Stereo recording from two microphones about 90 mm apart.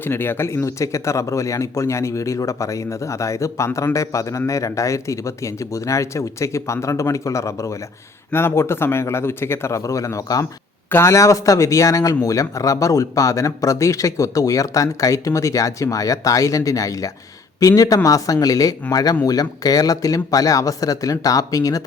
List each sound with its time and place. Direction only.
0.0 s speech: 25° left (ahead or behind); by 21.8 s 40° left (ahead or behind)